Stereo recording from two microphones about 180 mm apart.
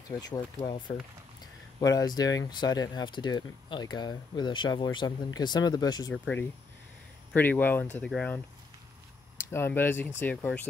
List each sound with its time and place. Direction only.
0.2 s speech: 20° left (ahead or behind)
7.3 s speech: 10° left (ahead or behind)
9.5 s speech: 10° left (ahead or behind)